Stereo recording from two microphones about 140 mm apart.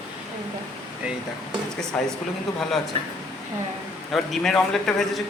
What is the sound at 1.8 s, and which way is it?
Speech, 5° left (ahead or behind).